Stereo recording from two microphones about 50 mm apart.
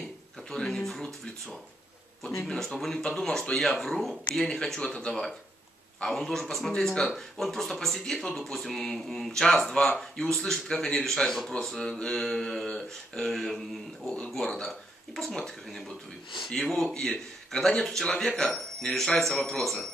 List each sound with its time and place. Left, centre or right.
0.5 s speech: centre
14.0 s speech: centre
14.3 s speech: centre